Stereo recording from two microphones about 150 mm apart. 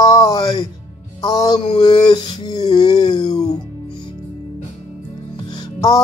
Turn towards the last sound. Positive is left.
turn(degrees=25)  # may be behind; listen again after turning